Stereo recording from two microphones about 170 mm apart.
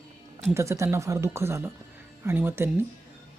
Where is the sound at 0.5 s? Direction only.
15° right (ahead or behind).